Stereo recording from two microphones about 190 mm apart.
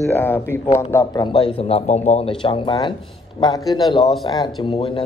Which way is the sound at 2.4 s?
25° left (ahead or behind).